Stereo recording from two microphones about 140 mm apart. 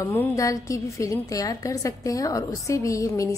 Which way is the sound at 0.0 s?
20° left (ahead or behind).